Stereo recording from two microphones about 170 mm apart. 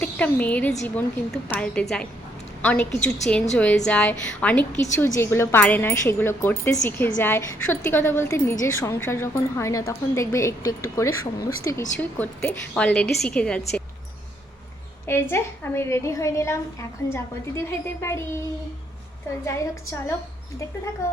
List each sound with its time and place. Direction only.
0.0 s a woman's voice: 10° left (ahead or behind)
15.0 s a woman's voice: 15° left (ahead or behind)
17.6 s a woman's voice: 15° left (ahead or behind)
19.5 s a woman's voice: 20° left (ahead or behind)